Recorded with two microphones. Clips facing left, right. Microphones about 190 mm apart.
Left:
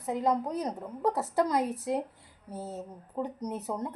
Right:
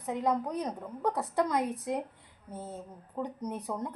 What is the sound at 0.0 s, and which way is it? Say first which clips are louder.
A woman's voice: left 2 dB; 5° left (ahead or behind).